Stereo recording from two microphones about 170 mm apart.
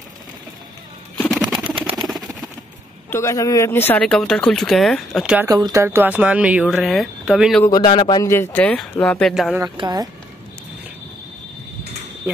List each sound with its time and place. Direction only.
1.5 s a sound: centre (ahead or behind)
3.1 s speech: 15° left (ahead or behind); by 5.5 s 5° right (ahead or behind)
5.5 s speech: 20° right (ahead or behind); by 7.6 s 5° right (ahead or behind)
7.6 s speech: 25° left (ahead or behind); by 9.6 s centre (ahead or behind)
9.8 s speech: 25° right (ahead or behind)